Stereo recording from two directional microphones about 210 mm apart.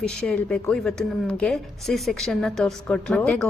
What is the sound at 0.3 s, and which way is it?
A woman's voice, 5° left (ahead or behind).